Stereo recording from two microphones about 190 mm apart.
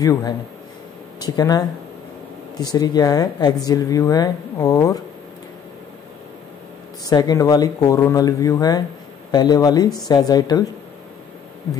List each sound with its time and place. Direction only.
0.0 s speech: 20° left (ahead or behind)
7.1 s speech: 20° left (ahead or behind)